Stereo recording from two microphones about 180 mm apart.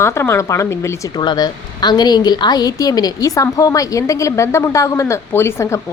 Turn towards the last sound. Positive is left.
turn(degrees=15)  # may be behind; listen again after turning